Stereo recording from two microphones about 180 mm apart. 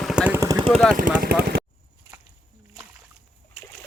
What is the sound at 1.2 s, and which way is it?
Speech, 60° right (ahead or behind).